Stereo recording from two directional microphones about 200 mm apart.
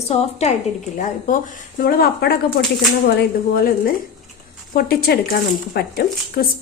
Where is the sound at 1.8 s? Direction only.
50° left (ahead or behind).